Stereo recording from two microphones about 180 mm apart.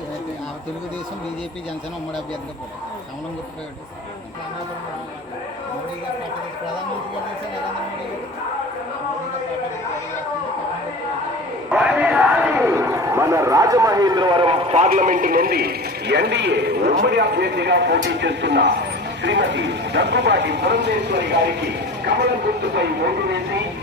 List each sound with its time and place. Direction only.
11.7 s a sound: 5° right (ahead or behind); by 14.8 s 35° right (ahead or behind)
14.8 s a man's voice: 45° right (ahead or behind); by 21.2 s 70° right (ahead or behind)
22.6 s a man's voice: 70° right (ahead or behind)